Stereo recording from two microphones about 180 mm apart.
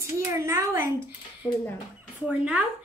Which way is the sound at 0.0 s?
15° right (ahead or behind).